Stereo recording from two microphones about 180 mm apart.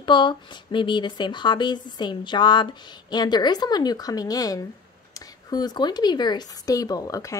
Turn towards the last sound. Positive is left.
turn(degrees=20)  # may be behind; listen again after turning